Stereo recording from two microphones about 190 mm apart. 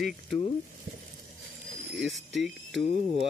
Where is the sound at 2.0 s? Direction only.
Centre (ahead or behind).